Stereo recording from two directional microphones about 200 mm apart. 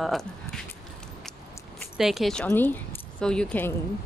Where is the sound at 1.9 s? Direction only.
Centre (ahead or behind).